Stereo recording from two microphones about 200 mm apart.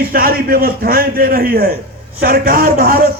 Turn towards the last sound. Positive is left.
turn(degrees=-50)  # may be behind; listen again after turning